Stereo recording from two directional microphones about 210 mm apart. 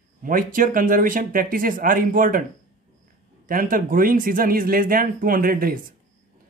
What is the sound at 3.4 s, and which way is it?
Speech, 40° right (ahead or behind).